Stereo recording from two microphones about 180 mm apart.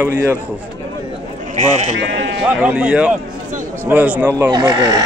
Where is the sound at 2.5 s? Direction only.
5° right (ahead or behind).